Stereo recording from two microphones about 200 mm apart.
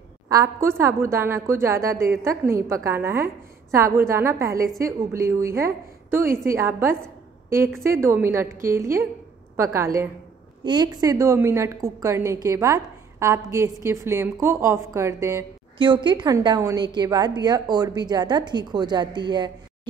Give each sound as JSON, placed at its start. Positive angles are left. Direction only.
{"t": 0.3, "sound": "a woman's voice", "side_deg": -15}